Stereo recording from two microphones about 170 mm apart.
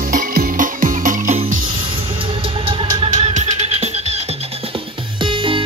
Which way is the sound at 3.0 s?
45° right (ahead or behind).